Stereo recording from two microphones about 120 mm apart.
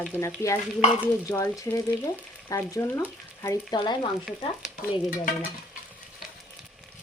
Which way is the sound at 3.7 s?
40° left (ahead or behind).